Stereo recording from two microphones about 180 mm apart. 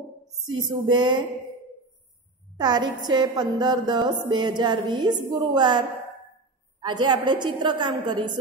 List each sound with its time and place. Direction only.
0.6 s music: 25° right (ahead or behind)
2.5 s a woman's voice: 25° right (ahead or behind)
3.0 s music: 25° right (ahead or behind)
6.8 s a woman's voice: 25° right (ahead or behind)
7.2 s music: 25° right (ahead or behind)